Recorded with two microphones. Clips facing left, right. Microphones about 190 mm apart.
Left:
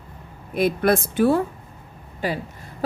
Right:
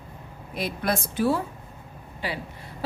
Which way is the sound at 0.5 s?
55° left (ahead or behind).